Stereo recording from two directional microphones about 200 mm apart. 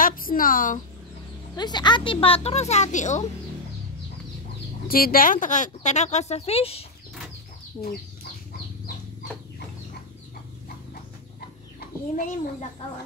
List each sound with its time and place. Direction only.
0.0 s a woman's voice: 45° left (ahead or behind)
1.6 s speech: 20° left (ahead or behind); by 3.3 s 35° left (ahead or behind)
4.8 s speech: 45° left (ahead or behind); by 6.9 s 30° left (ahead or behind)
12.2 s speech: 40° left (ahead or behind)